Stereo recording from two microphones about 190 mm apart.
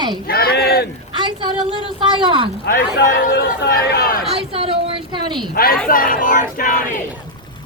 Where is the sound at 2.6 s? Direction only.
60° left (ahead or behind).